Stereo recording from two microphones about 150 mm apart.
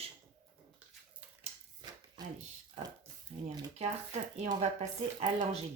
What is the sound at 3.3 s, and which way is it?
Speech, 45° right (ahead or behind).